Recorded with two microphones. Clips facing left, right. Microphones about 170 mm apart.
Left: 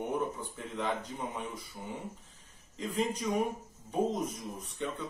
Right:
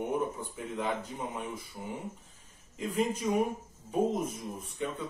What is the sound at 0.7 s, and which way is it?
Speech, 10° right (ahead or behind).